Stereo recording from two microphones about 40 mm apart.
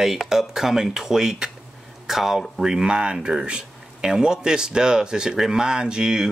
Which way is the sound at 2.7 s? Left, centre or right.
Right.